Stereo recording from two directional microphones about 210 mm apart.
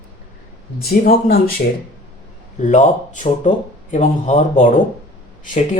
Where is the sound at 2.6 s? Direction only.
35° left (ahead or behind).